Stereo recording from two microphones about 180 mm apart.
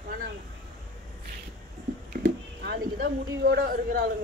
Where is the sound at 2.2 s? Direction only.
70° right (ahead or behind).